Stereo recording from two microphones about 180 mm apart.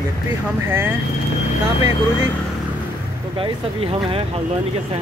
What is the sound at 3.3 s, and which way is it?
Speech, 30° right (ahead or behind).